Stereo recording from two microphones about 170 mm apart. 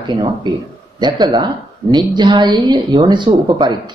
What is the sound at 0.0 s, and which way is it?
Speech, 25° right (ahead or behind).